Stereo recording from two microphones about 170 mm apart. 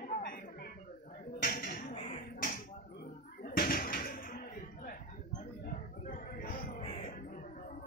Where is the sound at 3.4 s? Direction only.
60° left (ahead or behind).